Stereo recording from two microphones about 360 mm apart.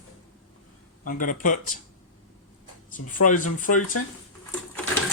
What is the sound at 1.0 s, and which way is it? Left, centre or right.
Speech, left.